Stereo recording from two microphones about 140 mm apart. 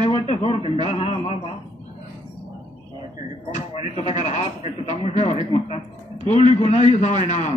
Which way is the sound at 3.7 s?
55° left (ahead or behind).